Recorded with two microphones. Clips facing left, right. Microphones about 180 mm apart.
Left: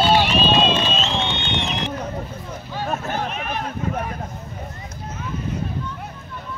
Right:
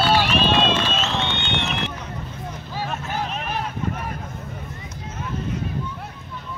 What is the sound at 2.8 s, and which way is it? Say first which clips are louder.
Vehicle: left 4 dB; 45° left (ahead or behind).